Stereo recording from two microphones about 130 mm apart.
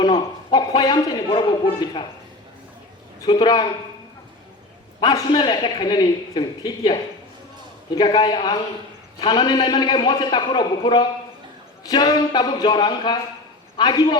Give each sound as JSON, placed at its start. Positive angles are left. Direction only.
{"t": 0.0, "sound": "a man's voice", "side_deg": 35}
{"t": 3.2, "sound": "a man's voice", "side_deg": 35}
{"t": 5.3, "sound": "a man's voice", "side_deg": 35}